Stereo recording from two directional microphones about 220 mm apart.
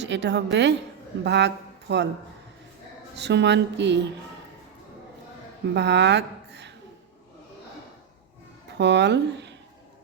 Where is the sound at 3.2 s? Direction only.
50° right (ahead or behind).